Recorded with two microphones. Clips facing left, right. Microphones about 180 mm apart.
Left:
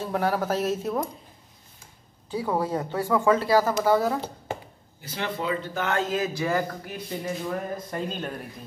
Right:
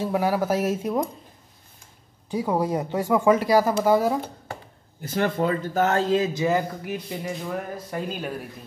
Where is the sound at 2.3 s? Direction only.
15° right (ahead or behind).